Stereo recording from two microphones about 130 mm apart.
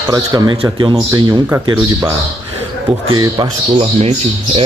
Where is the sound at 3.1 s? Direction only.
35° right (ahead or behind).